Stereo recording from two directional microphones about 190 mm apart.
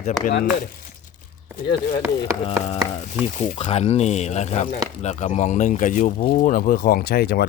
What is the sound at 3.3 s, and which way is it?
Speech, 40° left (ahead or behind).